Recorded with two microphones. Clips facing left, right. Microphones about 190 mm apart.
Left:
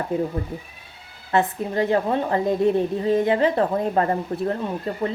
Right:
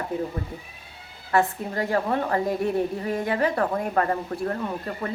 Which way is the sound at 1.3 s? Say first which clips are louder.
Left 2 dB; 20° left (ahead or behind).